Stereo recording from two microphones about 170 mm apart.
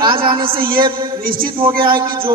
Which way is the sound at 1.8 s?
30° right (ahead or behind).